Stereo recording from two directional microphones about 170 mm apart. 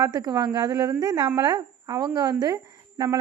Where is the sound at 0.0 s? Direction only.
25° right (ahead or behind).